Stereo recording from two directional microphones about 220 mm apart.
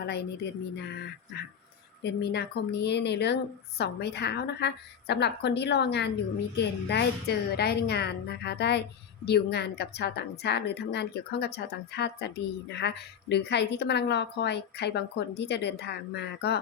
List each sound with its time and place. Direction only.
0.0 s speech: 50° left (ahead or behind)
2.0 s a woman's voice: 50° left (ahead or behind)